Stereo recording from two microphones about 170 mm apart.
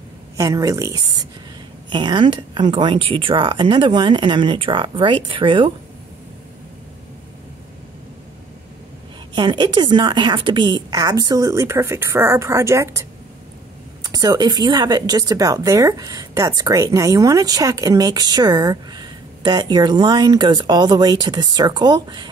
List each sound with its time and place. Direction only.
0.4 s speech: 20° right (ahead or behind)
9.3 s speech: 25° right (ahead or behind)
14.0 s speech: 25° right (ahead or behind)